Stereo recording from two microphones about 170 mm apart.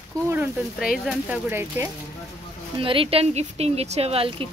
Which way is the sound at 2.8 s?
30° right (ahead or behind).